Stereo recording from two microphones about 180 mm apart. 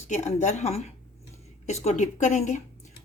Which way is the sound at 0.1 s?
40° left (ahead or behind).